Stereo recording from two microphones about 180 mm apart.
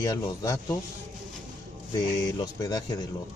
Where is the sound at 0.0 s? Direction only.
20° left (ahead or behind).